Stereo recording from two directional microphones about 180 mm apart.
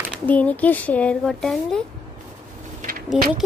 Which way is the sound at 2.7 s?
50° right (ahead or behind).